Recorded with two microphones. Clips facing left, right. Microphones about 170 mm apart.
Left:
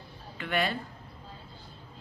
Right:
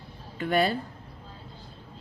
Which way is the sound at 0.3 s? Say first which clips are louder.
Right 6 dB; 40° right (ahead or behind).